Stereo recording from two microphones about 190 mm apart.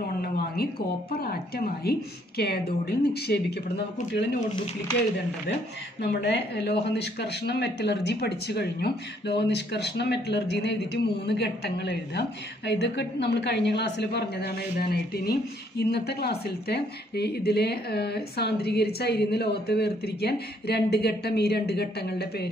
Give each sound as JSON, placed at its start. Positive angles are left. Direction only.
{"t": 0.2, "sound": "speech", "side_deg": 55}
{"t": 6.2, "sound": "speech", "side_deg": 65}